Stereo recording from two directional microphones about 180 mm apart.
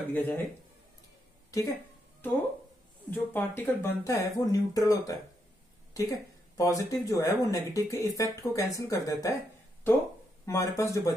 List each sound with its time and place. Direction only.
0.1 s speech: 10° left (ahead or behind)
1.5 s speech: 20° left (ahead or behind)
3.1 s speech: 10° left (ahead or behind)
10.4 s speech: 15° left (ahead or behind)